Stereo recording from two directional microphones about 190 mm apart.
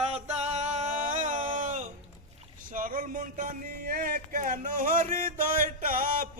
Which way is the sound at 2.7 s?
45° right (ahead or behind).